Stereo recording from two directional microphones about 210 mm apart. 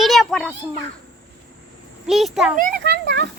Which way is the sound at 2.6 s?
45° right (ahead or behind).